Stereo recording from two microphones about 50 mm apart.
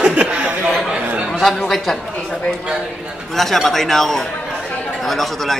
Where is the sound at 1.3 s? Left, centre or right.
Centre.